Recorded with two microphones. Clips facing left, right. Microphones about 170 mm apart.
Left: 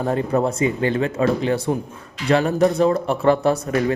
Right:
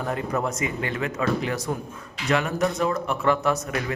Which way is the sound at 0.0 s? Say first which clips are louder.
Left 7 dB; 30° left (ahead or behind).